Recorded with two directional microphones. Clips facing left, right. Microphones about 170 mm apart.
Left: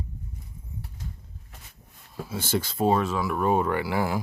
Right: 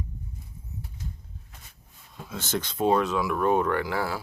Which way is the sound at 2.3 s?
10° left (ahead or behind).